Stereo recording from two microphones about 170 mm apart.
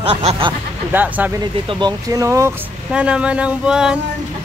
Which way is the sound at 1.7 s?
25° right (ahead or behind).